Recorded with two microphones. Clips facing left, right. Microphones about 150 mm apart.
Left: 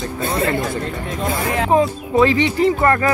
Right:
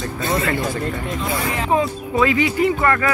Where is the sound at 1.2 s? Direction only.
50° left (ahead or behind).